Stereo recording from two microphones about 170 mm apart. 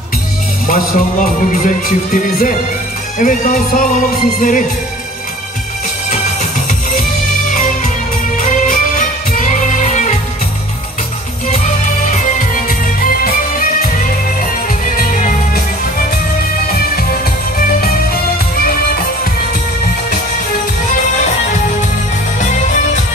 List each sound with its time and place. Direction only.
0.7 s speech: 55° left (ahead or behind)
3.2 s music: 55° left (ahead or behind)
7.0 s music: 50° left (ahead or behind)
11.4 s music: 45° left (ahead or behind)
16.7 s music: 60° left (ahead or behind)
22.4 s music: 45° left (ahead or behind)